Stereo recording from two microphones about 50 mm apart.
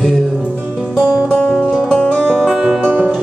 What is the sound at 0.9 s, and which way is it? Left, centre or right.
Music, centre.